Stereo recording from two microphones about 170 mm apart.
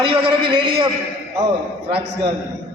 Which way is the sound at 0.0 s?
30° right (ahead or behind).